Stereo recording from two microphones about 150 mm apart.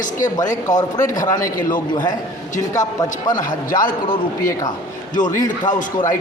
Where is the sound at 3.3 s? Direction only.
65° left (ahead or behind).